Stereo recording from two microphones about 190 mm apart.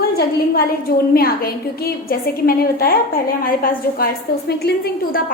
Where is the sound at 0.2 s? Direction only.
50° left (ahead or behind).